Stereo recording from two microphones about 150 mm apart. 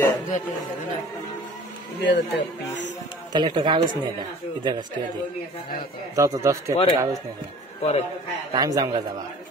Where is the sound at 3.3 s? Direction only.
30° right (ahead or behind).